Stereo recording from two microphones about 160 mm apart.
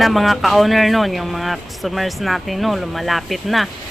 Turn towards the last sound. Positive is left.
turn(degrees=0)  # may be behind; listen again after turning